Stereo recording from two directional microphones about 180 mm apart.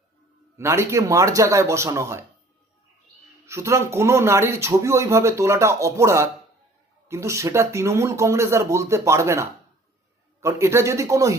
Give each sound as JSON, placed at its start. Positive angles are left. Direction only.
{"t": 0.5, "sound": "speech", "side_deg": -15}
{"t": 3.4, "sound": "speech", "side_deg": -15}